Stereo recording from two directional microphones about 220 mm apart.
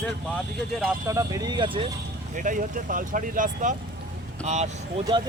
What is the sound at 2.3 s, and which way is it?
Speech, 35° right (ahead or behind).